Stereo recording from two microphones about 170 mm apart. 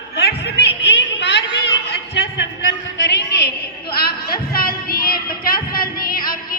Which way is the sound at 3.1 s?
90° left.